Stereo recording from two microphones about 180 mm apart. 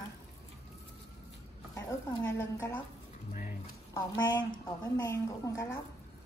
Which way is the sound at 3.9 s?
20° left (ahead or behind).